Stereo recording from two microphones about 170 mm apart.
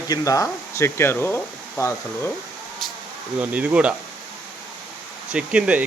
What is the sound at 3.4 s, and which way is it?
Speech, 10° right (ahead or behind).